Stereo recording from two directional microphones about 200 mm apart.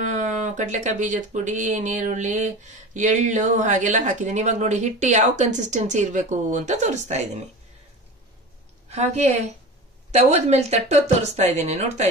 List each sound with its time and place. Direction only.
0.0 s speech: 35° right (ahead or behind)
8.8 s a woman's voice: 35° right (ahead or behind)